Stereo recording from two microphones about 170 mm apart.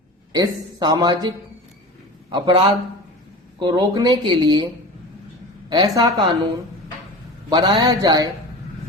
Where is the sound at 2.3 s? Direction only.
25° right (ahead or behind).